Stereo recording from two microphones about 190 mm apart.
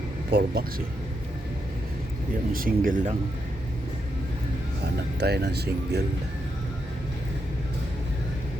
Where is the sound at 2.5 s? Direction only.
50° right (ahead or behind).